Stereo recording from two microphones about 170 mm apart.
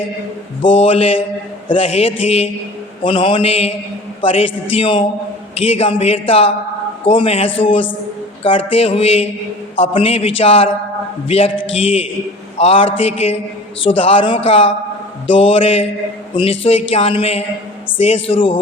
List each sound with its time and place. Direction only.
0.6 s a man's voice: 35° left (ahead or behind)